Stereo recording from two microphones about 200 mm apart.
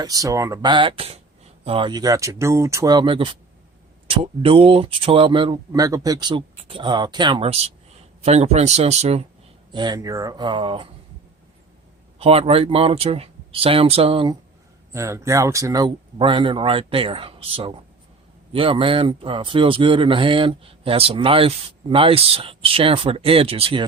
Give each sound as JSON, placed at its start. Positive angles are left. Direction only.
{"t": 0.0, "sound": "speech", "side_deg": -15}
{"t": 9.7, "sound": "speech", "side_deg": -20}
{"t": 12.2, "sound": "speech", "side_deg": -30}
{"t": 14.9, "sound": "speech", "side_deg": -15}